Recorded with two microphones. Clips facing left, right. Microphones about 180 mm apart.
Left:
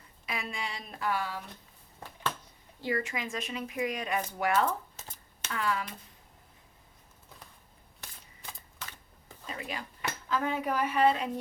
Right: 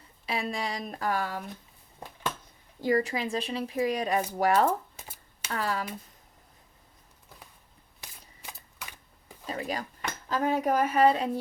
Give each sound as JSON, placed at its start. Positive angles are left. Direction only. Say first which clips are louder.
{"t": 0.3, "sound": "speech", "louder": "right 6 dB", "side_deg": -35}
{"t": 2.8, "sound": "speech", "louder": "right 6 dB", "side_deg": -40}
{"t": 4.9, "sound": "shuffling cards", "louder": "right 1 dB", "side_deg": -10}
{"t": 5.5, "sound": "speech", "louder": "right 2 dB", "side_deg": -40}
{"t": 8.5, "sound": "typewriter", "louder": "right 1 dB", "side_deg": -10}
{"t": 9.5, "sound": "dishes", "louder": "right 6 dB", "side_deg": -35}
{"t": 10.2, "sound": "speech", "louder": "right 5 dB", "side_deg": -40}